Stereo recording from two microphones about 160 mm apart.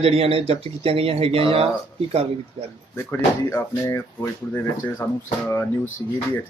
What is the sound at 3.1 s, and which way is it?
Speech, 15° left (ahead or behind).